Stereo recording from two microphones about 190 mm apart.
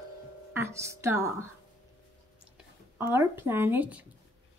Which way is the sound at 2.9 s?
10° right (ahead or behind).